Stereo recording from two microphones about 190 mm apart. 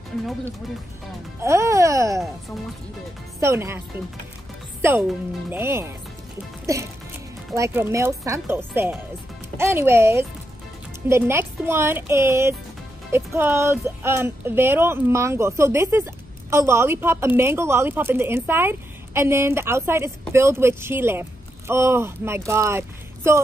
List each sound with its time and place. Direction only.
1.4 s speech: 15° right (ahead or behind)
3.3 s speech: 15° right (ahead or behind)
5.5 s a child's voice: 10° right (ahead or behind)